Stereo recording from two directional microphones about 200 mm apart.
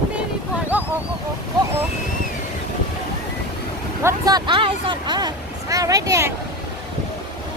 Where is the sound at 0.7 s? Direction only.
10° right (ahead or behind).